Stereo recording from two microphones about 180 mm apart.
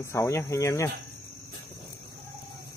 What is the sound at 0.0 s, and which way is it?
Speech, 15° left (ahead or behind).